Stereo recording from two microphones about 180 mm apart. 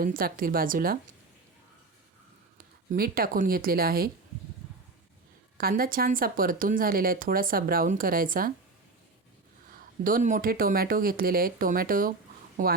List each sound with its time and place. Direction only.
0.0 s speech: 50° right (ahead or behind)
2.6 s speech: 55° right (ahead or behind)
5.5 s speech: 55° right (ahead or behind)
10.0 s speech: 50° right (ahead or behind)